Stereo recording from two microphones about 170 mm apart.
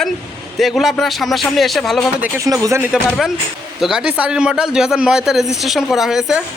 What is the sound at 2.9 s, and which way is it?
Speech, centre (ahead or behind).